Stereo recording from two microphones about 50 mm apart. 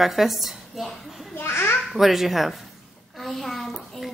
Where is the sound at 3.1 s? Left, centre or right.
Centre.